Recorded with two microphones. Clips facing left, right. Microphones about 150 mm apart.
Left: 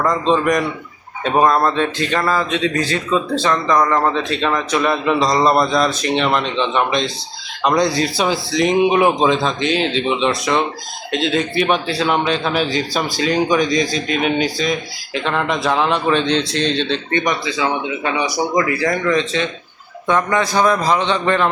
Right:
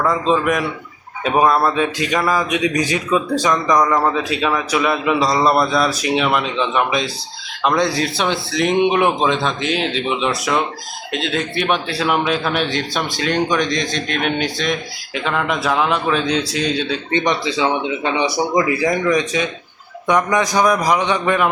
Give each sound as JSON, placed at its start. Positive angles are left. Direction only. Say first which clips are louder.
{"t": 0.0, "sound": "a man's voice", "louder": "left 1 dB", "side_deg": -5}
{"t": 17.2, "sound": "speech", "louder": "right 4 dB", "side_deg": -25}